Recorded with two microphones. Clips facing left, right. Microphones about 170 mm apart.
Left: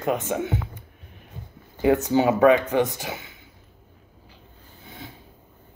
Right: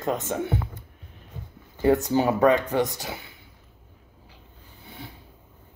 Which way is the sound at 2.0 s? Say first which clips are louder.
Left 3 dB; 20° left (ahead or behind).